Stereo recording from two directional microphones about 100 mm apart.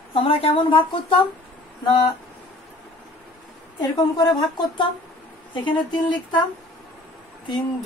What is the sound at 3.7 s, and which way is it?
A woman's voice, 45° left (ahead or behind).